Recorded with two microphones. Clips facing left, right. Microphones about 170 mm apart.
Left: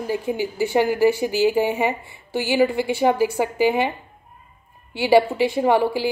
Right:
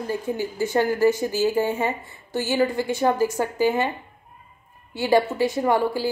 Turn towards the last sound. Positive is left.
turn(degrees=25)  # may be behind; listen again after turning